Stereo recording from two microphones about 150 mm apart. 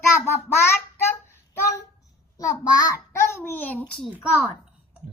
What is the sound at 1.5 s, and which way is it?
Child singing, 15° left (ahead or behind).